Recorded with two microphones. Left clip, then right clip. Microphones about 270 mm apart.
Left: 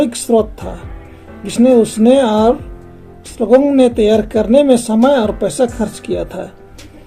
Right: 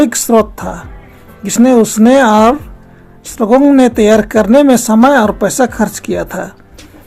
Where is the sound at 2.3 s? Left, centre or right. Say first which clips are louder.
Right 4 dB; right.